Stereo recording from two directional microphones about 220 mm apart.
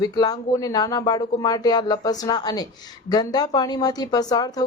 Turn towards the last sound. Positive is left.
turn(degrees=15)  # may be behind; listen again after turning